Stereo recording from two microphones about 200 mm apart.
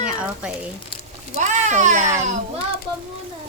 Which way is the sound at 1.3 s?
35° right (ahead or behind).